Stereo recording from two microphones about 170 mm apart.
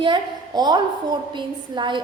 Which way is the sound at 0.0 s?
25° right (ahead or behind).